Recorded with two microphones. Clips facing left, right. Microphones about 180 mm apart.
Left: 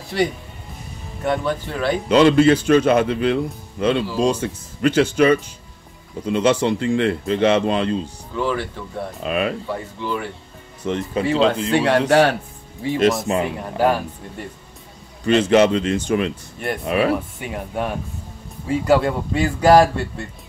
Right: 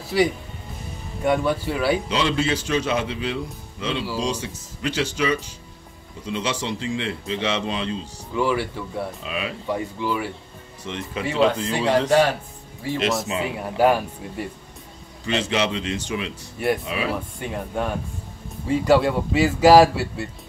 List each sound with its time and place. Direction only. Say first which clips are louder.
0.1 s speech: right 1 dB; 5° right (ahead or behind)
2.0 s a man's voice: left 10 dB; 55° left (ahead or behind)
8.4 s speech: even; 10° right (ahead or behind)
9.2 s speech: left 8 dB; 55° left (ahead or behind)
9.7 s speech: right 1 dB; 10° right (ahead or behind)
10.9 s speech: left 8 dB; 40° left (ahead or behind)
11.3 s speech: left 1 dB; 20° left (ahead or behind)
11.7 s a man's voice: left 3 dB; 65° left (ahead or behind)
13.3 s a man's voice: left 6 dB; 55° left (ahead or behind)
15.2 s speech: left 9 dB; 50° left (ahead or behind)
16.5 s speech: right 7 dB; centre (ahead or behind)
16.8 s speech: left 8 dB; 55° left (ahead or behind)
17.4 s speech: left 1 dB; 5° left (ahead or behind)